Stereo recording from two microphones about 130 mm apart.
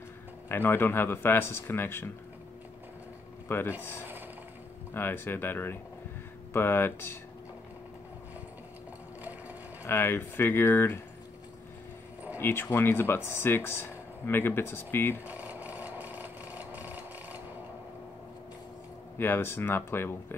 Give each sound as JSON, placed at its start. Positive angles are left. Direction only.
{"t": 0.5, "sound": "speech", "side_deg": 15}
{"t": 3.4, "sound": "speech", "side_deg": 20}
{"t": 4.9, "sound": "speech", "side_deg": 15}
{"t": 9.8, "sound": "speech", "side_deg": 15}
{"t": 12.4, "sound": "speech", "side_deg": 15}
{"t": 15.2, "sound": "a sound", "side_deg": -10}
{"t": 19.1, "sound": "speech", "side_deg": 15}